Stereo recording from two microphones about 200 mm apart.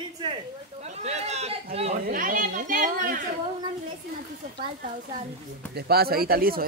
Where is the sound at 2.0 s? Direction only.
40° right (ahead or behind).